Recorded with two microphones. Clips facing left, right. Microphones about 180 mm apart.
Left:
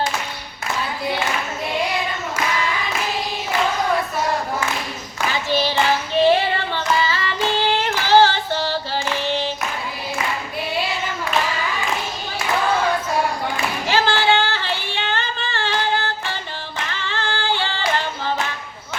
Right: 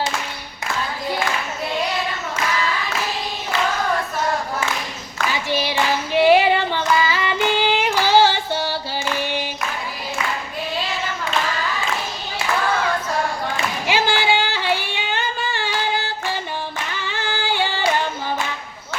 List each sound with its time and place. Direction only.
5.5 s child singing: 15° right (ahead or behind)
13.8 s singing: 10° right (ahead or behind)
17.0 s female singing: 15° right (ahead or behind)